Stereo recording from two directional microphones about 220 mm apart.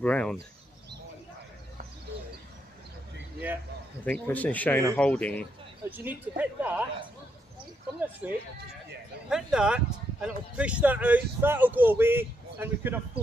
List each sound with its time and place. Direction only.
0.0 s speech: 5° left (ahead or behind)
3.4 s speech: 10° right (ahead or behind)
4.0 s speech: 5° left (ahead or behind)
5.9 s speech: 10° right (ahead or behind)
8.2 s speech: 5° right (ahead or behind)